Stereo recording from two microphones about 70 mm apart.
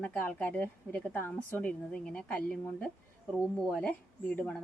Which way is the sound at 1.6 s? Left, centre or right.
Centre.